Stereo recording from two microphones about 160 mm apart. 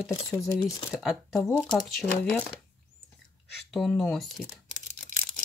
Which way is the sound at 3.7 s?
Centre (ahead or behind).